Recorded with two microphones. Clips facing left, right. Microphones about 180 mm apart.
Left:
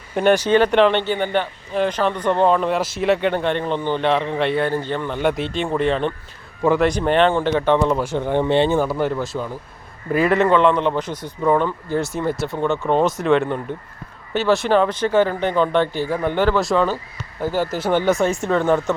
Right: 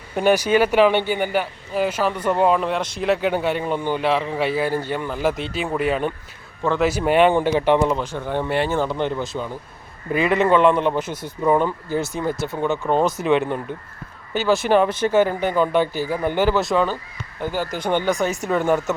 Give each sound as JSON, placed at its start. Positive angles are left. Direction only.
{"t": 0.2, "sound": "speech", "side_deg": -5}
{"t": 8.1, "sound": "speech", "side_deg": 20}
{"t": 8.8, "sound": "speech", "side_deg": 5}
{"t": 14.7, "sound": "speech", "side_deg": -10}